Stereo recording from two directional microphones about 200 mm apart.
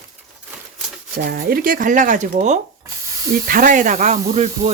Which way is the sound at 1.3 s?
50° right (ahead or behind).